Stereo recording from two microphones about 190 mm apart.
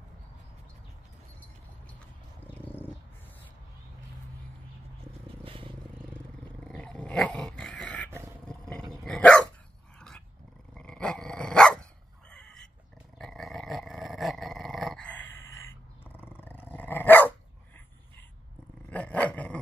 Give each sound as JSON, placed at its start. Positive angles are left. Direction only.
{"t": 2.5, "sound": "a sound", "side_deg": 10}
{"t": 5.4, "sound": "vehicle", "side_deg": -25}
{"t": 6.6, "sound": "dog", "side_deg": 5}
{"t": 12.3, "sound": "a sound", "side_deg": 5}
{"t": 13.2, "sound": "dog", "side_deg": 0}
{"t": 18.9, "sound": "dog", "side_deg": 5}